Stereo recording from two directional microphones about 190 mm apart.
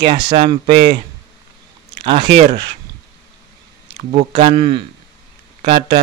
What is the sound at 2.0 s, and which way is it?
Speech, 25° right (ahead or behind).